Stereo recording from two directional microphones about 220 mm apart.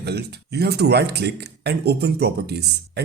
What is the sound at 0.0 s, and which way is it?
A man's voice, 50° right (ahead or behind).